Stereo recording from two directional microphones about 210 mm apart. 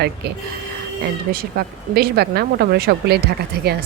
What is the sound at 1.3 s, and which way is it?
Speech, 45° right (ahead or behind).